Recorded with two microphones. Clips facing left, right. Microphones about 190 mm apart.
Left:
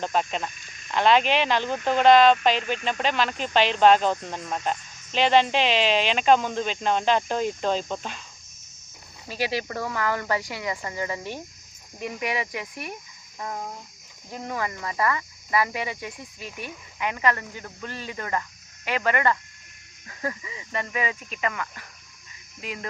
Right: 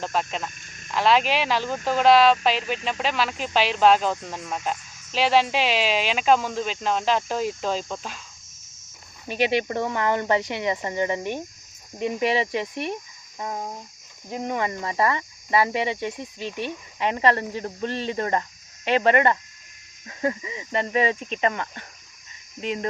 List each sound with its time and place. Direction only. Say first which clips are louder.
0.0 s speech: left 1 dB; centre (ahead or behind)
0.5 s cricket: right 3 dB; 50° right (ahead or behind)
0.9 s speech: even; centre (ahead or behind)
9.2 s speech: right 5 dB; 20° right (ahead or behind)